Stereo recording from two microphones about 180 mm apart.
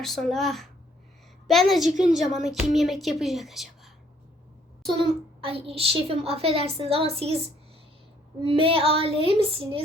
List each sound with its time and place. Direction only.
0.0 s a woman's voice: centre (ahead or behind)
4.9 s a child's voice: 30° right (ahead or behind)
8.4 s a child's voice: 30° right (ahead or behind)